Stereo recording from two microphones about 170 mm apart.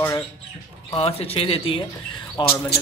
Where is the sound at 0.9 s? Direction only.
35° left (ahead or behind).